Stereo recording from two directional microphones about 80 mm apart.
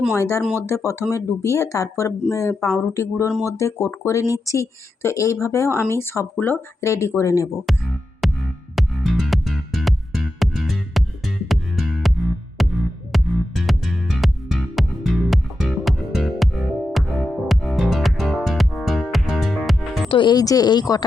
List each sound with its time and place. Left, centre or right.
0.1 s speech: left
6.4 s speech: left
6.8 s speech: left
8.2 s music: centre
20.1 s speech: left
20.4 s speech: left